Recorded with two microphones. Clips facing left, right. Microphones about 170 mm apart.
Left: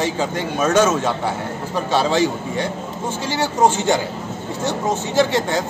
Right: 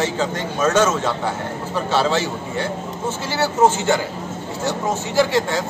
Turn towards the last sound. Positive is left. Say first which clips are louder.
# even
turn(degrees=20)  # may be behind; listen again after turning